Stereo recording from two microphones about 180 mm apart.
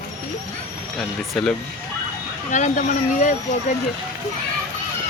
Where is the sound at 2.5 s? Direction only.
45° left (ahead or behind).